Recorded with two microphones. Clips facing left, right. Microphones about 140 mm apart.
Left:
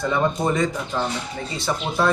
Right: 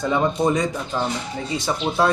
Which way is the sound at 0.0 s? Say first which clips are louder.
Right 2 dB; 15° right (ahead or behind).